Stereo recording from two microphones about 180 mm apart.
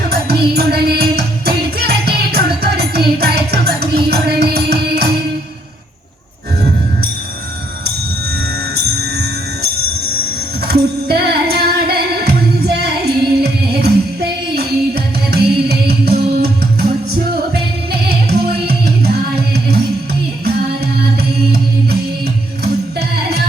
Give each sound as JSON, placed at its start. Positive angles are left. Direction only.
{"t": 0.1, "sound": "music", "side_deg": -60}
{"t": 10.7, "sound": "music", "side_deg": -60}
{"t": 18.3, "sound": "music", "side_deg": -60}